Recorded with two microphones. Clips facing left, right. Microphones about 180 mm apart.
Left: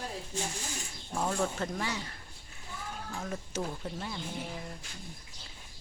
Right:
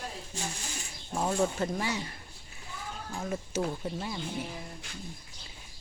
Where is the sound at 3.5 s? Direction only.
10° right (ahead or behind).